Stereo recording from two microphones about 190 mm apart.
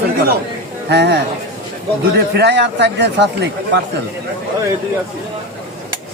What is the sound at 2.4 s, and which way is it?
Speech, 65° right (ahead or behind).